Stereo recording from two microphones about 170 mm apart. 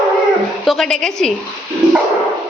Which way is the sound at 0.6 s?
Centre (ahead or behind).